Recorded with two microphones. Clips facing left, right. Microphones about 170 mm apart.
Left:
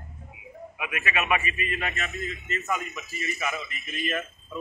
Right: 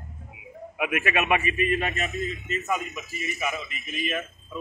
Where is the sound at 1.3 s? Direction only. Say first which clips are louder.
Right 6 dB; 40° right (ahead or behind).